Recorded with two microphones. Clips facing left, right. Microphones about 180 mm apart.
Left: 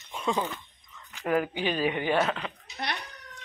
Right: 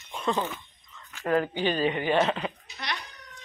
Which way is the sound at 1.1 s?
10° left (ahead or behind).